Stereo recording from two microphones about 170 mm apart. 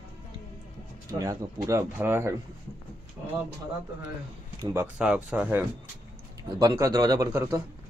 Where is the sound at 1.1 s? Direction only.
20° right (ahead or behind).